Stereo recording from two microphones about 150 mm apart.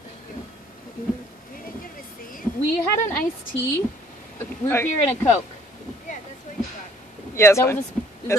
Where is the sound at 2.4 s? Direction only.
15° left (ahead or behind).